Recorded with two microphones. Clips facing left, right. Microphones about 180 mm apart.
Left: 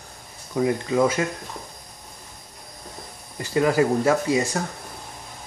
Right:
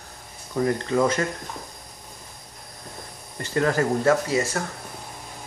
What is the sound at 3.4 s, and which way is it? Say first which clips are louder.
Speech: left 3 dB; 10° left (ahead or behind).